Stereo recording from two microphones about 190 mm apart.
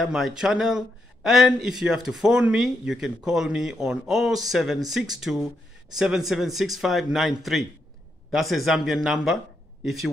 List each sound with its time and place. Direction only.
0.0 s speech: centre (ahead or behind)